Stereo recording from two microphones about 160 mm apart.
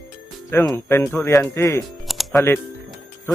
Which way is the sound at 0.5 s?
15° left (ahead or behind).